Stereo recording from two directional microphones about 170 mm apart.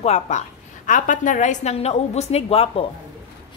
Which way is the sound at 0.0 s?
40° left (ahead or behind).